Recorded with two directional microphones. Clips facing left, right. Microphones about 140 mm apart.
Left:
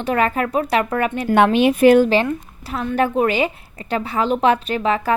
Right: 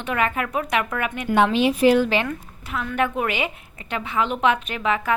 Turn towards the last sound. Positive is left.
turn(degrees=35)  # may be behind; listen again after turning